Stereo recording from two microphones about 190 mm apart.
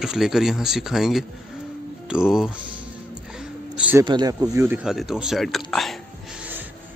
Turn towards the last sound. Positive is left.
turn(degrees=0)  # may be behind; listen again after turning